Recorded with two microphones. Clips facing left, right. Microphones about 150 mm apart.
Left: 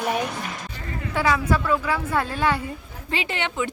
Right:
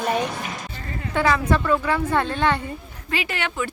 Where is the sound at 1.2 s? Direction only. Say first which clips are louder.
Right 2 dB; 5° left (ahead or behind).